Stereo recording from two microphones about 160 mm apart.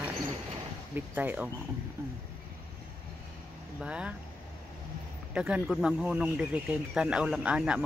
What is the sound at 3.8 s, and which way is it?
Speech, 5° right (ahead or behind).